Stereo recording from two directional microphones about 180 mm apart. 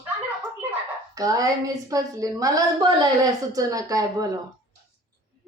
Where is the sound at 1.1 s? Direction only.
20° right (ahead or behind).